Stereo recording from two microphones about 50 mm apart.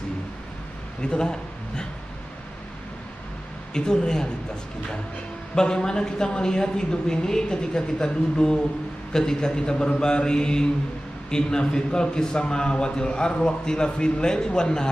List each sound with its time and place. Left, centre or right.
1.0 s a man's voice: centre
3.7 s a man's voice: centre
5.5 s a man's voice: centre